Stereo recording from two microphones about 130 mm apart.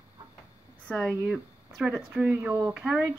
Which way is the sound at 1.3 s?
5° right (ahead or behind).